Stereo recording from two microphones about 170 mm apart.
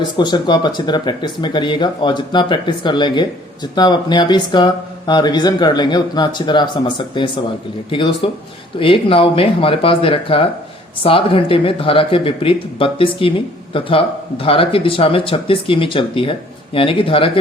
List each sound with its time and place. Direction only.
0.0 s speech: 25° left (ahead or behind)